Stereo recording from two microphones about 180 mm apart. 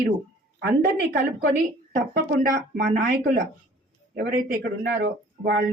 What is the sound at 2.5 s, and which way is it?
Speech, 55° right (ahead or behind).